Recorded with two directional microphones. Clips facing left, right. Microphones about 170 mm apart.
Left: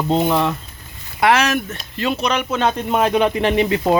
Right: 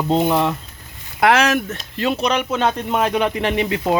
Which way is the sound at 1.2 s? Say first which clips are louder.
Right 1 dB; 65° right (ahead or behind).